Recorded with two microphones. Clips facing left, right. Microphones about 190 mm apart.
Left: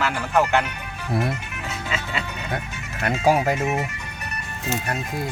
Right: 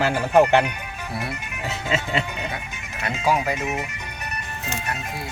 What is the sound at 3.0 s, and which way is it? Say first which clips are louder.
Speech: left 3 dB; 45° left (ahead or behind).